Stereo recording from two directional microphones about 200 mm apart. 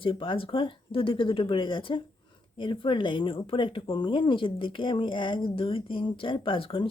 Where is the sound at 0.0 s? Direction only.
25° left (ahead or behind).